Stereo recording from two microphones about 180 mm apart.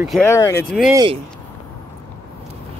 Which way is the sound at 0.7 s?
Centre (ahead or behind).